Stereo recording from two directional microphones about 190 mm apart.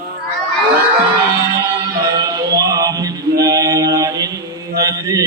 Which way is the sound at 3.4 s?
20° right (ahead or behind).